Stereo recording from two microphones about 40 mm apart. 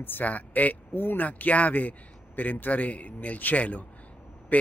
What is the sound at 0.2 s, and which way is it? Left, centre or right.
Speech, left.